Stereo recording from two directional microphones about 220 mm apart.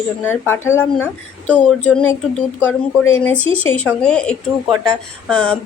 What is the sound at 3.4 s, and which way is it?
Speech, 25° right (ahead or behind).